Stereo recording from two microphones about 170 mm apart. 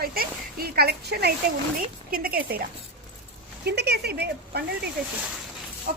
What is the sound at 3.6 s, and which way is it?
A woman's voice, 75° right (ahead or behind).